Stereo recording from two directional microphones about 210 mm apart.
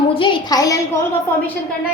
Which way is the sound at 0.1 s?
25° left (ahead or behind).